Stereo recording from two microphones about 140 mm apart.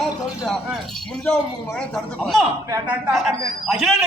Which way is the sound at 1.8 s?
5° left (ahead or behind).